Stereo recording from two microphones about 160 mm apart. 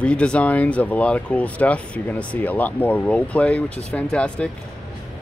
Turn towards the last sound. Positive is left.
turn(degrees=5)  # may be behind; listen again after turning